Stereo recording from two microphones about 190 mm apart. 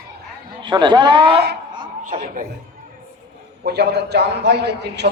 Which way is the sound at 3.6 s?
60° right (ahead or behind).